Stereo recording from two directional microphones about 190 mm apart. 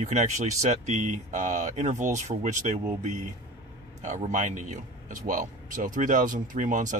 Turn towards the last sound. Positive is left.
turn(degrees=-40)  # may be behind; listen again after turning